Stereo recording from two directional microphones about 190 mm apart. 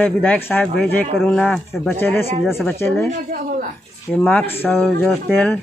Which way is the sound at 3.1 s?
45° right (ahead or behind).